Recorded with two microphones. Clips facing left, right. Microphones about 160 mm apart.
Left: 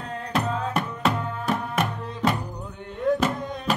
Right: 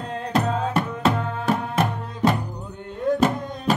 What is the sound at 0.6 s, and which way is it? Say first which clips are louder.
Music: right 3 dB; 30° right (ahead or behind).